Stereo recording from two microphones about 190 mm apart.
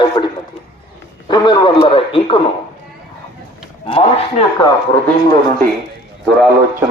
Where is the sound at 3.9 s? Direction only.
30° left (ahead or behind).